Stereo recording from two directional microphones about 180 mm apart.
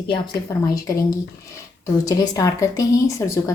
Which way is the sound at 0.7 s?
20° left (ahead or behind).